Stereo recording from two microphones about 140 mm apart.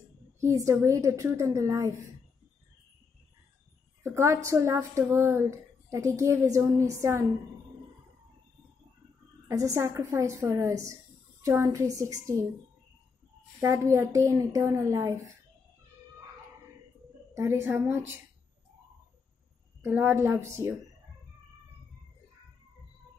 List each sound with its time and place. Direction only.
0.4 s a woman's voice: 20° right (ahead or behind)
4.0 s a woman's voice: 20° right (ahead or behind)
9.5 s a woman's voice: 20° right (ahead or behind)
13.6 s a woman's voice: 20° right (ahead or behind)
17.3 s a woman's voice: 20° right (ahead or behind)
19.8 s a woman's voice: 15° right (ahead or behind)